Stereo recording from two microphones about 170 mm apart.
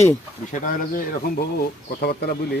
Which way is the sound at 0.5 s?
50° left (ahead or behind).